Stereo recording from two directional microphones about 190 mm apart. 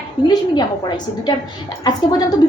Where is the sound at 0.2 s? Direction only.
20° left (ahead or behind).